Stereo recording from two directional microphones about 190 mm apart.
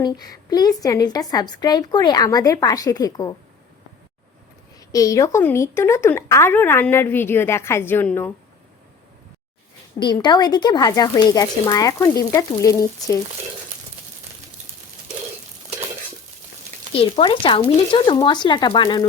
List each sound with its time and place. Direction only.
0.0 s a woman's voice: 20° left (ahead or behind)
4.8 s speech: 20° left (ahead or behind)
10.0 s a woman's voice: 25° left (ahead or behind)
16.9 s a woman's voice: 25° left (ahead or behind)